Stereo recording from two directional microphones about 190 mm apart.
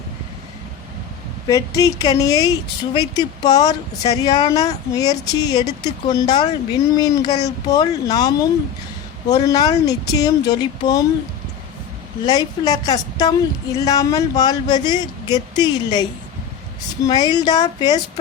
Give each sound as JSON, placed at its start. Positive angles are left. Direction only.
{"t": 1.5, "sound": "speech", "side_deg": 15}
{"t": 12.2, "sound": "speech", "side_deg": 20}
{"t": 17.2, "sound": "speech", "side_deg": 20}